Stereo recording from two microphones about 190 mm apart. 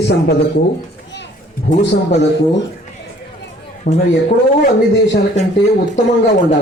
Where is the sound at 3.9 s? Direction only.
45° left (ahead or behind).